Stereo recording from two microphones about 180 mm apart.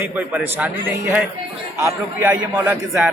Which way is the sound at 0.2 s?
10° right (ahead or behind).